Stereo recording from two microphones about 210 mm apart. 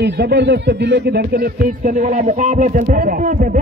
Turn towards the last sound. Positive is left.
turn(degrees=-40)  # may be behind; listen again after turning